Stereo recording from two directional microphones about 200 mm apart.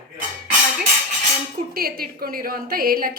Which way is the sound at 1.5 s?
45° right (ahead or behind).